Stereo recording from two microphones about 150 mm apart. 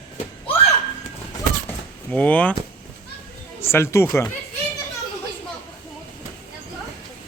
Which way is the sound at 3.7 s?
15° left (ahead or behind).